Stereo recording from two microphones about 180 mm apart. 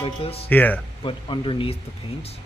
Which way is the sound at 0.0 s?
35° left (ahead or behind).